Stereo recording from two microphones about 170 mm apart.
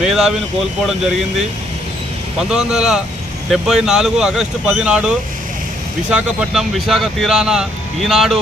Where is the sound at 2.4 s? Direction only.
5° right (ahead or behind).